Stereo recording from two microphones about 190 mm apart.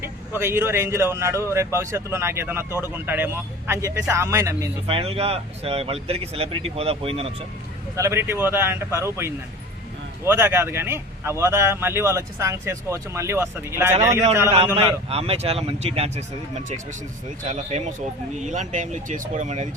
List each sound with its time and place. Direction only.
0.0 s speech: 10° right (ahead or behind)
4.9 s speech: 30° right (ahead or behind)
7.9 s speech: 15° right (ahead or behind)
15.1 s speech: 30° right (ahead or behind)